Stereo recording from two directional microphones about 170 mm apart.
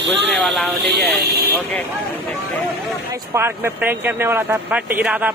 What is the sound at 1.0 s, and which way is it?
Speech, 70° right (ahead or behind).